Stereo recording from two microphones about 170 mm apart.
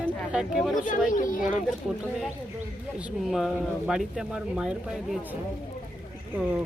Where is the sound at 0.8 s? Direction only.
50° left (ahead or behind).